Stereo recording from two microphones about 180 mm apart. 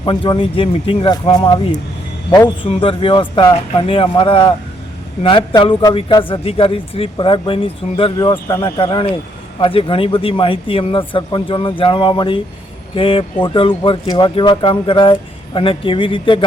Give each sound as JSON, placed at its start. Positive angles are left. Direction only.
{"t": 0.0, "sound": "speech", "side_deg": 25}
{"t": 2.6, "sound": "speech", "side_deg": 30}